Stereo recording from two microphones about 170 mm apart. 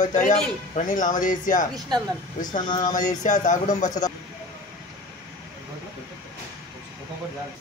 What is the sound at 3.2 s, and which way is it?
Speech, 45° left (ahead or behind).